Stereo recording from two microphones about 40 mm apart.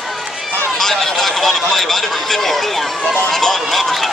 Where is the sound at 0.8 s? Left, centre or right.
Centre.